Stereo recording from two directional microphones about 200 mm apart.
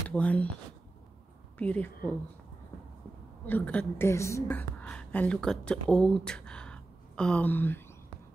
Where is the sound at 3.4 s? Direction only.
10° left (ahead or behind).